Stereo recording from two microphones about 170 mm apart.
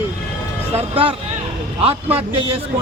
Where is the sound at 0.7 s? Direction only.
35° right (ahead or behind).